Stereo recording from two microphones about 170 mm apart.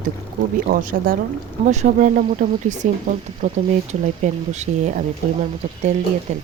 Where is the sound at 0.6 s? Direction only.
55° right (ahead or behind).